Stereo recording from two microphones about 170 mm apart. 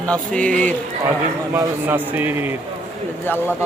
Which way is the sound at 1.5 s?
10° right (ahead or behind).